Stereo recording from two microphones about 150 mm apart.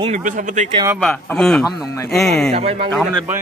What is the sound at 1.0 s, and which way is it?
Speech, 5° left (ahead or behind).